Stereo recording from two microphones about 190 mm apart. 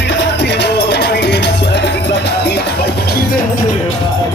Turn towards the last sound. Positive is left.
turn(degrees=55)  # may be behind; listen again after turning